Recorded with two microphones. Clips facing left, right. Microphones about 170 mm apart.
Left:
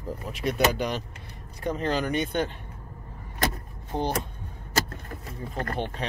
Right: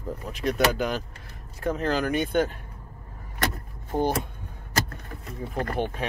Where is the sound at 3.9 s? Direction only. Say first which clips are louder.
Right 3 dB; 10° right (ahead or behind).